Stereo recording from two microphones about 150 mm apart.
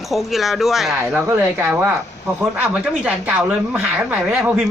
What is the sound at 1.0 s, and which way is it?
Speech, 15° right (ahead or behind).